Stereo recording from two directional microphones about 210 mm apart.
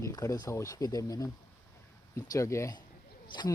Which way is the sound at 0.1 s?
20° left (ahead or behind).